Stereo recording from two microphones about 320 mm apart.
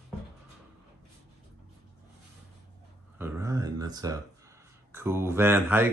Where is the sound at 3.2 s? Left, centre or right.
Centre.